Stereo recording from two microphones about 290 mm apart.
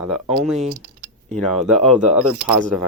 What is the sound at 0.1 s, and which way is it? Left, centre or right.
Speech, centre.